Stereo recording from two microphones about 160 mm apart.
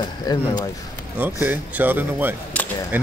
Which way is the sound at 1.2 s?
10° right (ahead or behind).